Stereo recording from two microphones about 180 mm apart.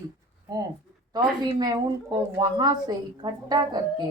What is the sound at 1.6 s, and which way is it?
A woman's voice, 20° right (ahead or behind).